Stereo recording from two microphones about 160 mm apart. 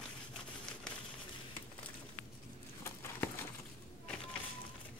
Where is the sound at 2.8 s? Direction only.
15° left (ahead or behind).